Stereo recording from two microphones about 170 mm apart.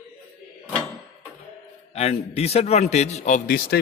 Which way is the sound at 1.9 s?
35° left (ahead or behind).